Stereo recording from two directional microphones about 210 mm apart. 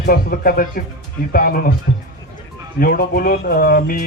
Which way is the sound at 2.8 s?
45° left (ahead or behind).